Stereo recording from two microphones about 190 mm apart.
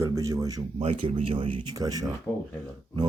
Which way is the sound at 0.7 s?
30° right (ahead or behind).